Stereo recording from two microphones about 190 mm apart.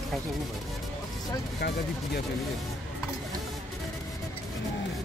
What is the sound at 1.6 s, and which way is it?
Speech, 60° left (ahead or behind).